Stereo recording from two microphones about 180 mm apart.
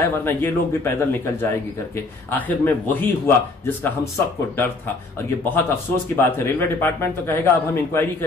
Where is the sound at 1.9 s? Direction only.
10° left (ahead or behind).